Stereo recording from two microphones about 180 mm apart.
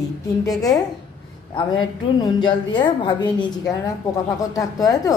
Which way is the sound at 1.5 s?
25° left (ahead or behind).